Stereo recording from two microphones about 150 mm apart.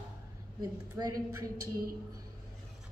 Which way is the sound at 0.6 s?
25° right (ahead or behind).